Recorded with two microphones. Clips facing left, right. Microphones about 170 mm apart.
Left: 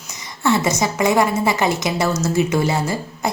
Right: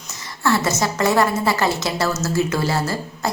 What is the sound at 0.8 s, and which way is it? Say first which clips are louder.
A woman's voice: left 1 dB; 15° left (ahead or behind).